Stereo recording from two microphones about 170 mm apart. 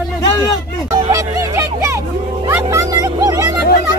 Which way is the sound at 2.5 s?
20° right (ahead or behind).